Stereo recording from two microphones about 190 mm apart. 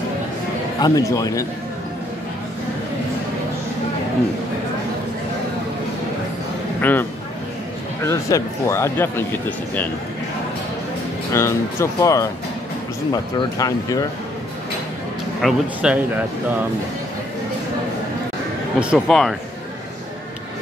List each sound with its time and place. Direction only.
0.7 s speech: 20° left (ahead or behind)
6.8 s speech: 10° left (ahead or behind)
11.3 s speech: 15° left (ahead or behind)
15.4 s speech: 5° right (ahead or behind)
18.8 s speech: centre (ahead or behind)